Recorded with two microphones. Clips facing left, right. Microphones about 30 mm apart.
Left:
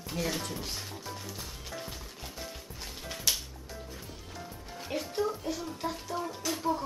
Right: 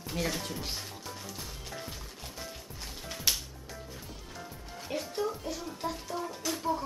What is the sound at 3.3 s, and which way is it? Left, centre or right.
Music, centre.